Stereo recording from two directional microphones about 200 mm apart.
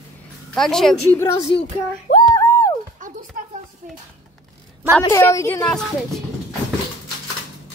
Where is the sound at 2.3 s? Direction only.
15° left (ahead or behind).